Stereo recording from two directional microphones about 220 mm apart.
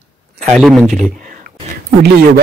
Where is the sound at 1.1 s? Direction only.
35° right (ahead or behind).